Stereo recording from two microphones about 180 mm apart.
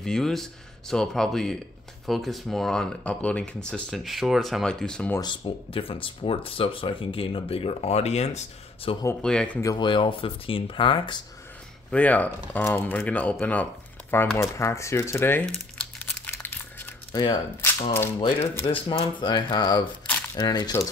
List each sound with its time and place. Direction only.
0.0 s speech: 5° left (ahead or behind)
5.2 s speech: 30° left (ahead or behind)
9.2 s speech: 5° left (ahead or behind)
9.6 s speech: 20° left (ahead or behind)
11.9 s speech: 10° left (ahead or behind)
16.3 s crumpling: 15° left (ahead or behind)
17.1 s speech: 20° left (ahead or behind)
18.7 s speech: 30° left (ahead or behind)